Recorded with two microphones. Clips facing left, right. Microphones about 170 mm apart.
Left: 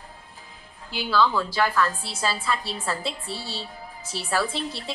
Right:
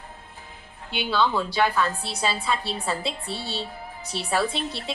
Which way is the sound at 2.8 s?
Centre (ahead or behind).